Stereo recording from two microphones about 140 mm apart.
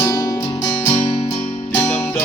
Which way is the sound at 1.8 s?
15° left (ahead or behind).